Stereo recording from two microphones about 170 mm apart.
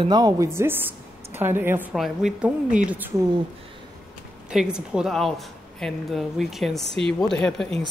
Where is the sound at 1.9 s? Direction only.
Centre (ahead or behind).